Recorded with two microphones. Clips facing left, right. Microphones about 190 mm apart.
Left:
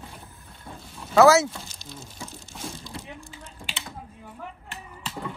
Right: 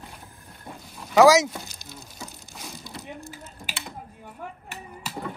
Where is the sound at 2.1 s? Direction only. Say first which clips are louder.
Left 1 dB; centre (ahead or behind).